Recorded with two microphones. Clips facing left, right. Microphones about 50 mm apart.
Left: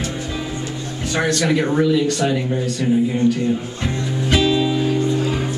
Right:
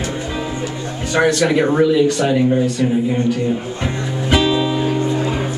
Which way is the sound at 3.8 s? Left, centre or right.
Centre.